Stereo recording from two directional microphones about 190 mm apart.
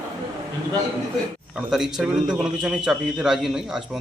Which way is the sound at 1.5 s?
5° right (ahead or behind).